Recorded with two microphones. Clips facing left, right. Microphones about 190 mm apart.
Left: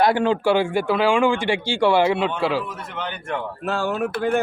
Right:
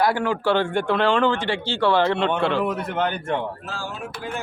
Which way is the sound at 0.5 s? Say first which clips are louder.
Left 1 dB; 10° left (ahead or behind).